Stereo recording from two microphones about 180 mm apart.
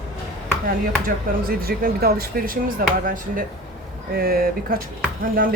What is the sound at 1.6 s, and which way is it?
Speech, 55° right (ahead or behind).